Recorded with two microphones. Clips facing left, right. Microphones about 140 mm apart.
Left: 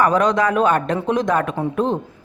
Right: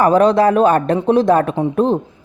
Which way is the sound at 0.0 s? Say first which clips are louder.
Right 5 dB; 35° right (ahead or behind).